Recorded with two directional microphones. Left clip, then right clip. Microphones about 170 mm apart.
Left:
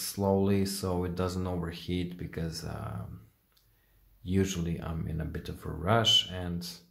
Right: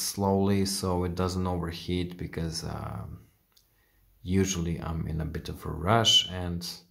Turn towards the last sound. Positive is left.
turn(degrees=-15)  # may be behind; listen again after turning